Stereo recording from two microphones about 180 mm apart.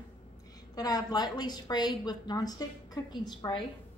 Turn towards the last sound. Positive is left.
turn(degrees=25)  # may be behind; listen again after turning